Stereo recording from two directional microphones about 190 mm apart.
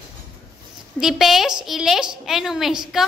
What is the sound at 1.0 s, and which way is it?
A woman's voice, centre (ahead or behind).